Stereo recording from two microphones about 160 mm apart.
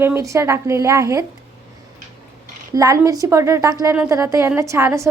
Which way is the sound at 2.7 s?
20° right (ahead or behind).